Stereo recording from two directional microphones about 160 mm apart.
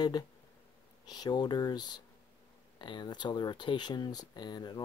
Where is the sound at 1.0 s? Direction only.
25° left (ahead or behind).